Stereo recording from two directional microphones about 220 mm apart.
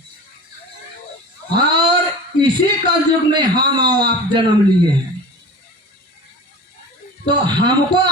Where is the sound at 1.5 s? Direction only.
20° right (ahead or behind).